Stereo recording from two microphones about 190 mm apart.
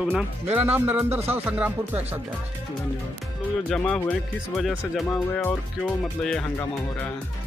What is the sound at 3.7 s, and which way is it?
Speech, 5° left (ahead or behind).